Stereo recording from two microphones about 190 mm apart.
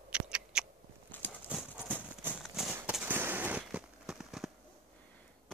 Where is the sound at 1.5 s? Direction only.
5° right (ahead or behind).